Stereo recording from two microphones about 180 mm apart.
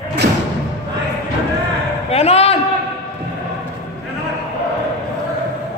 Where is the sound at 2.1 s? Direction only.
35° left (ahead or behind).